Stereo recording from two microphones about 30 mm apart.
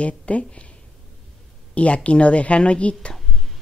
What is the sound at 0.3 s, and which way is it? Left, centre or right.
Speech, left.